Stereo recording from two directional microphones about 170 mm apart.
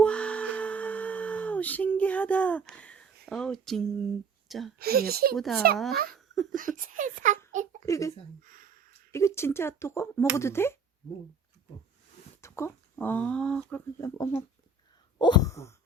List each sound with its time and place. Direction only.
0.0 s a sound: 5° left (ahead or behind)
4.8 s speech: 65° right (ahead or behind)
5.4 s a child's voice: centre (ahead or behind)
6.1 s laughter: centre (ahead or behind)
6.5 s a child's voice: 50° right (ahead or behind)
7.9 s speech: 20° left (ahead or behind)
8.4 s a sound: 55° right (ahead or behind)
9.1 s speech: 15° left (ahead or behind)
12.4 s speech: 15° left (ahead or behind)
15.2 s a sound: 20° left (ahead or behind)